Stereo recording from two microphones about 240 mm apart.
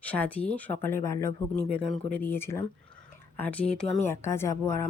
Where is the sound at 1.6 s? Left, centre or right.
Right.